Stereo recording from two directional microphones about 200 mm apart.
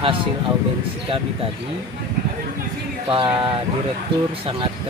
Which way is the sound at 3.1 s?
25° right (ahead or behind).